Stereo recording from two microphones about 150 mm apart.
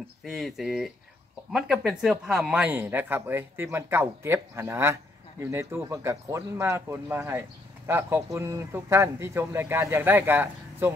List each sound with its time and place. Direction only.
0.2 s speech: centre (ahead or behind)